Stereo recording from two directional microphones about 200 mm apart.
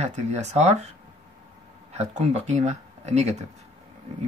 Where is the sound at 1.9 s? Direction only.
35° right (ahead or behind).